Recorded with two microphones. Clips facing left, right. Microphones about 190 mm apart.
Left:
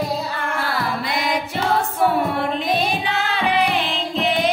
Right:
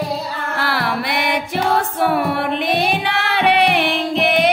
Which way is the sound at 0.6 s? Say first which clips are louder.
Right 5 dB; 75° right (ahead or behind).